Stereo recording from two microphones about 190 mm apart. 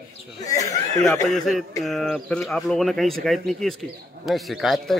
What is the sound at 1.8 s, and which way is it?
A man's voice, centre (ahead or behind).